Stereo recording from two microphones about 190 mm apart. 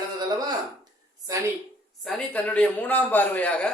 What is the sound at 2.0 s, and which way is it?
A man's voice, 10° left (ahead or behind).